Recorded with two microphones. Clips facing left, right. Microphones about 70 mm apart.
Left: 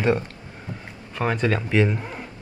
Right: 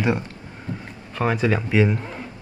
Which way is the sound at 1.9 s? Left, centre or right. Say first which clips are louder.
Right 2 dB; centre.